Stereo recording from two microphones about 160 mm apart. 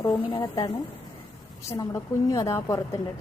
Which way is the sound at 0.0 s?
25° left (ahead or behind).